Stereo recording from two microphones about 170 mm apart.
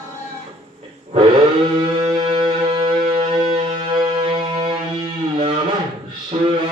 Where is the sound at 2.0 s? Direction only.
30° right (ahead or behind).